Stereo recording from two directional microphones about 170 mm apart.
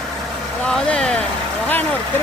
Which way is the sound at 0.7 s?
5° left (ahead or behind).